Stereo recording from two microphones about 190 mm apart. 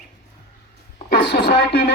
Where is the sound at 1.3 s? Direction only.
55° left (ahead or behind).